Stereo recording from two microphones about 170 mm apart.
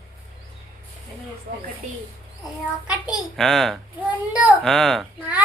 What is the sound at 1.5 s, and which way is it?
Speech, 65° right (ahead or behind).